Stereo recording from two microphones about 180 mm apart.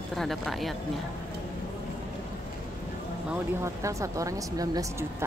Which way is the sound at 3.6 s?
15° right (ahead or behind).